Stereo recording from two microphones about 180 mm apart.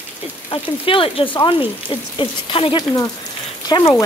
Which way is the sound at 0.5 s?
30° left (ahead or behind).